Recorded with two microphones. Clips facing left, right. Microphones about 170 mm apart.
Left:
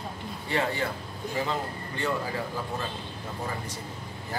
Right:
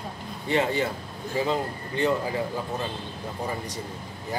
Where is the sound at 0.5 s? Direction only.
20° right (ahead or behind).